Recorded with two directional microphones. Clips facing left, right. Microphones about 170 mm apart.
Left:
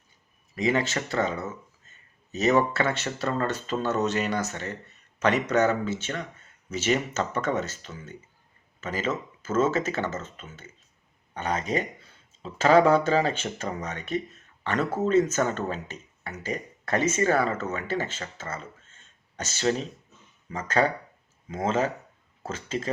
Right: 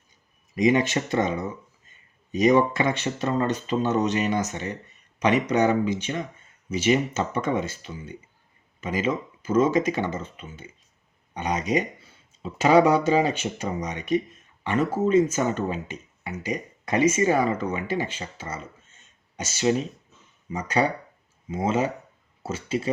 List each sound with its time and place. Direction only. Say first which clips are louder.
0.5 s speech: right 5 dB; 15° right (ahead or behind)